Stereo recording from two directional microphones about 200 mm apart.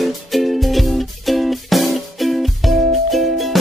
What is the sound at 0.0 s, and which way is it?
Music, centre (ahead or behind).